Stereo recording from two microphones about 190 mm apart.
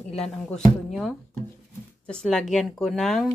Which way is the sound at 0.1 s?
5° left (ahead or behind).